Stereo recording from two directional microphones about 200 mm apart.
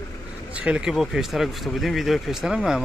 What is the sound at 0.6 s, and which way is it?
Speech, 5° right (ahead or behind).